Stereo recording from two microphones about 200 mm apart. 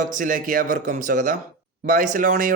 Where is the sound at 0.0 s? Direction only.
40° right (ahead or behind).